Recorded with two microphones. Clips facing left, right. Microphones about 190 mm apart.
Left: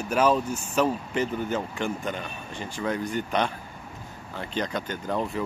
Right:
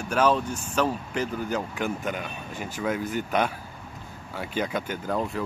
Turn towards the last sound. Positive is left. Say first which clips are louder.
# even
turn(degrees=0)  # may be behind; listen again after turning